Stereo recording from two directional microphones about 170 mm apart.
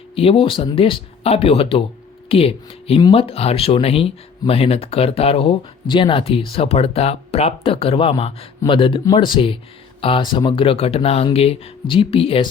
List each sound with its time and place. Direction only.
0.2 s speech: 35° left (ahead or behind)